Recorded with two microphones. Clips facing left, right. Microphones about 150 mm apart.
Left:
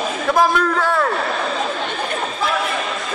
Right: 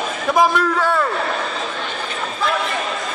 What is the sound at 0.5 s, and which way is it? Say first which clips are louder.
Speech: even; 5° right (ahead or behind).